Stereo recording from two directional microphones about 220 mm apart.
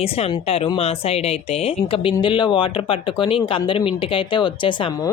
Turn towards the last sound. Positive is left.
turn(degrees=20)  # may be behind; listen again after turning